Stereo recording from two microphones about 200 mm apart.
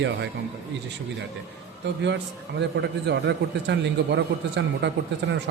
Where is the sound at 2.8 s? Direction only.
60° right (ahead or behind).